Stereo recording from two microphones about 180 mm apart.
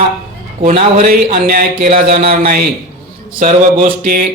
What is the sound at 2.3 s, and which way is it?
A man's voice, 55° right (ahead or behind).